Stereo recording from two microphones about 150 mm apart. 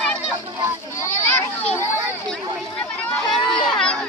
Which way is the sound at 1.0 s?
15° left (ahead or behind).